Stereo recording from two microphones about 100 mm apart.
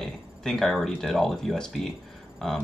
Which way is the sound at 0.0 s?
5° left (ahead or behind).